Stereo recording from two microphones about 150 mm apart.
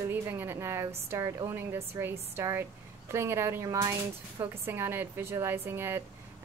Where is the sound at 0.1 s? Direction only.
15° right (ahead or behind).